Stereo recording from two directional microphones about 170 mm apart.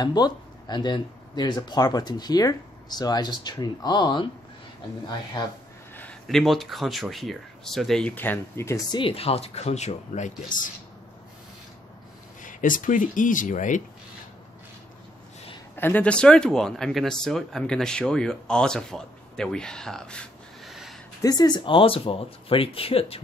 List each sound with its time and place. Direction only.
0.0 s speech: 25° left (ahead or behind)
5.4 s speech: 25° left (ahead or behind)
5.9 s speech: 5° left (ahead or behind)
8.9 s speech: 30° left (ahead or behind); by 10.7 s 50° left (ahead or behind)
12.4 s speech: 50° left (ahead or behind)
15.7 s speech: 10° left (ahead or behind)
21.2 s speech: 20° left (ahead or behind)